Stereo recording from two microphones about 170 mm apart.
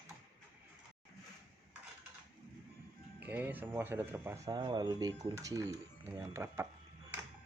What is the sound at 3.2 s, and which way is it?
Speech, 10° right (ahead or behind).